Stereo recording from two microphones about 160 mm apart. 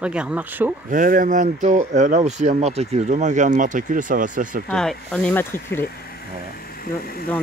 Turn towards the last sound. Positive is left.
turn(degrees=70)  # may be behind; listen again after turning